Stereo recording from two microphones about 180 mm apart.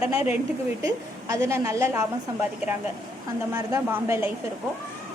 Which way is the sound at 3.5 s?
15° right (ahead or behind).